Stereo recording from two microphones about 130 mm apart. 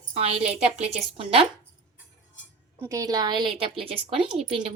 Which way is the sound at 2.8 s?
25° right (ahead or behind).